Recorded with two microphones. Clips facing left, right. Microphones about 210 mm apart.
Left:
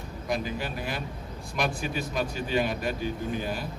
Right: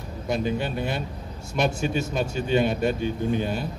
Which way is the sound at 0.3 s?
25° right (ahead or behind).